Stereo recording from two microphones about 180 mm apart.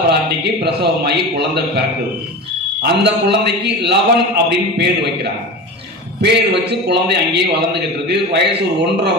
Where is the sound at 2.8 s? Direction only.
70° right (ahead or behind).